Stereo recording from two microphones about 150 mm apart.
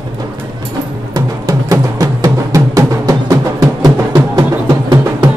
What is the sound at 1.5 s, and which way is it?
Music, 25° right (ahead or behind).